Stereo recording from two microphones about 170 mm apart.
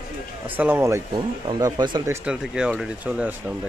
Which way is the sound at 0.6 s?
10° right (ahead or behind).